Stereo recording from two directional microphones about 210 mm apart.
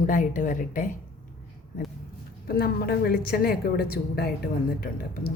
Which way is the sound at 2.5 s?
45° left (ahead or behind).